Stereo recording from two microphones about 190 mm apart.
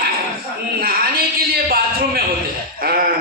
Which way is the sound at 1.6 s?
55° right (ahead or behind).